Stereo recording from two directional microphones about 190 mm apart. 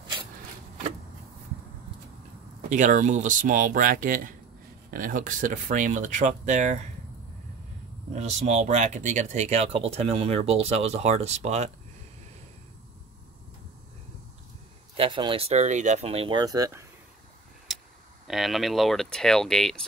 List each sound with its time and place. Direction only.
2.7 s speech: 40° right (ahead or behind)
8.1 s speech: 35° right (ahead or behind)
15.0 s speech: 25° right (ahead or behind)
18.2 s speech: centre (ahead or behind)